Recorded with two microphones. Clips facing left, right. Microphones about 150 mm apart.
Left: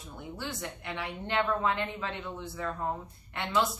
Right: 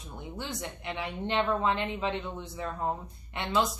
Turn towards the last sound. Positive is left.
turn(degrees=-20)  # may be behind; listen again after turning